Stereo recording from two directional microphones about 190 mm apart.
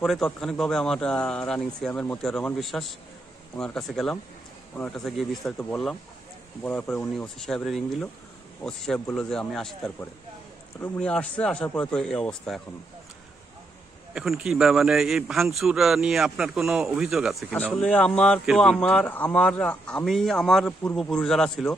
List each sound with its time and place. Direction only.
0.0 s a man's voice: centre (ahead or behind)
14.1 s a man's voice: centre (ahead or behind)